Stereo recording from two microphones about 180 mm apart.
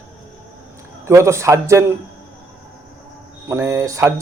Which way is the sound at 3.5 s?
15° right (ahead or behind).